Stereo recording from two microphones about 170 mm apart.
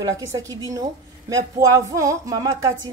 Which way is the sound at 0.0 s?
20° right (ahead or behind).